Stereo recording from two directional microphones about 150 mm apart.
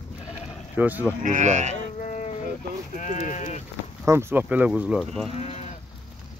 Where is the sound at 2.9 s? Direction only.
55° left (ahead or behind).